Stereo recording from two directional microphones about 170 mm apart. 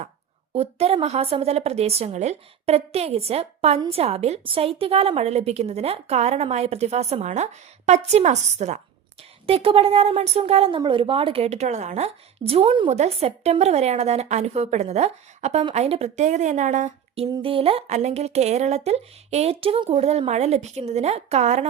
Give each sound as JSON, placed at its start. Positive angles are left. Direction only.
{"t": 0.5, "sound": "a woman's voice", "side_deg": -35}
{"t": 17.2, "sound": "a woman's voice", "side_deg": -25}